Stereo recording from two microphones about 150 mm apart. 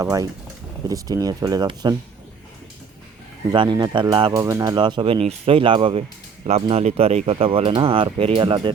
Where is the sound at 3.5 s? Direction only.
30° right (ahead or behind).